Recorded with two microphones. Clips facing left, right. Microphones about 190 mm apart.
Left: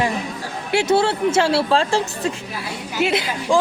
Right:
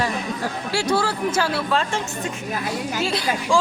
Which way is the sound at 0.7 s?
25° left (ahead or behind).